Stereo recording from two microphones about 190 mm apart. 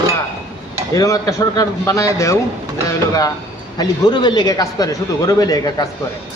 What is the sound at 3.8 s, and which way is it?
Speech, 20° left (ahead or behind).